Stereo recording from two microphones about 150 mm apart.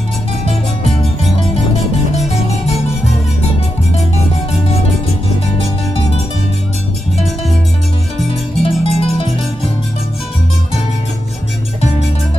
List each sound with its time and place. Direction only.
8.6 s music: 40° left (ahead or behind)